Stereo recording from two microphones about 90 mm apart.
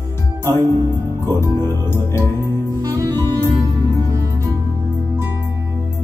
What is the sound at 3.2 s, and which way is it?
Music, 30° left (ahead or behind).